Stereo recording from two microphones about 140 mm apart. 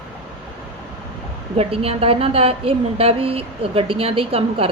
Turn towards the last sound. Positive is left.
turn(degrees=-40)  # may be behind; listen again after turning